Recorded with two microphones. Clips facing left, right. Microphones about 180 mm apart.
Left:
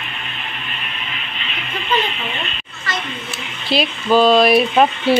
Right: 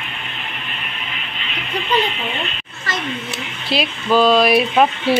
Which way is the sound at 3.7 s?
Centre (ahead or behind).